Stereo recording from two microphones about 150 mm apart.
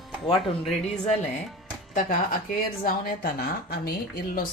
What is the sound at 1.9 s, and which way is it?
Speech, 65° left (ahead or behind).